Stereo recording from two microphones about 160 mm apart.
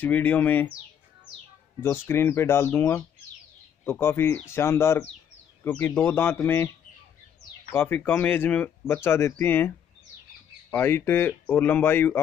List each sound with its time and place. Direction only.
0.0 s speech: 10° left (ahead or behind)
1.8 s speech: 15° left (ahead or behind)
7.7 s speech: 15° left (ahead or behind)
10.7 s speech: 15° left (ahead or behind)